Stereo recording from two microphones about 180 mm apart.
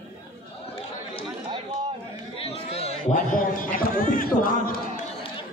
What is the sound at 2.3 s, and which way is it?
A man's voice, 35° left (ahead or behind).